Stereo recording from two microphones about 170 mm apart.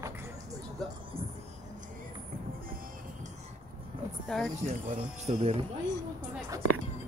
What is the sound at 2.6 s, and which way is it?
Music, 55° right (ahead or behind).